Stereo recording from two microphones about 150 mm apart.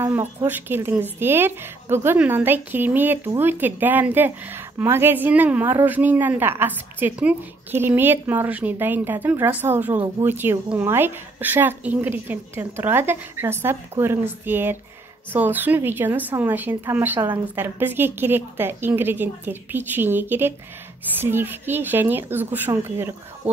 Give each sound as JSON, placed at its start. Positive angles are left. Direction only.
{"t": 0.0, "sound": "speech", "side_deg": -15}